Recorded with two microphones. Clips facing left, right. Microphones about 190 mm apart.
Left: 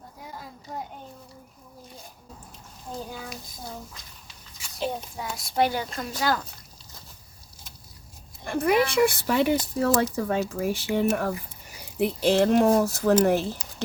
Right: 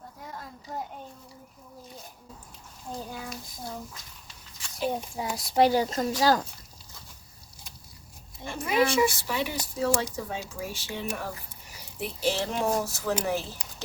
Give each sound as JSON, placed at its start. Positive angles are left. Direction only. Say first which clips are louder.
{"t": 0.3, "sound": "a sound", "louder": "left 1 dB", "side_deg": 5}
{"t": 5.2, "sound": "a woman's voice", "louder": "right 2 dB", "side_deg": -25}
{"t": 8.4, "sound": "speech", "louder": "left 3 dB", "side_deg": 60}